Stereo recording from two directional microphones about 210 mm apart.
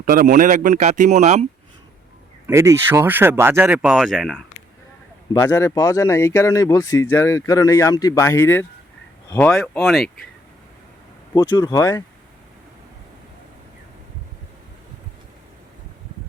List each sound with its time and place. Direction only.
0.0 s speech: 40° right (ahead or behind)
2.5 s speech: 15° right (ahead or behind)
5.3 s speech: 15° left (ahead or behind); by 10.1 s centre (ahead or behind)
11.3 s speech: 20° left (ahead or behind)